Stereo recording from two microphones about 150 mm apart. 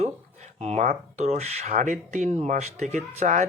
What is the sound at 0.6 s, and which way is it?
Speech, 50° right (ahead or behind).